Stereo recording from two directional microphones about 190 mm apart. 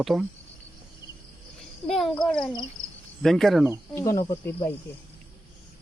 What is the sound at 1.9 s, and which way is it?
Speech, centre (ahead or behind).